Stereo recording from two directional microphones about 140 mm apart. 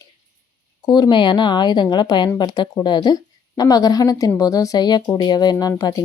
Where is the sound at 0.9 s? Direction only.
30° left (ahead or behind).